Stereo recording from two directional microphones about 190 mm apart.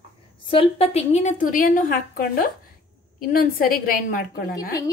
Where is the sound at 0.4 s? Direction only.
30° left (ahead or behind); by 4.3 s 50° left (ahead or behind).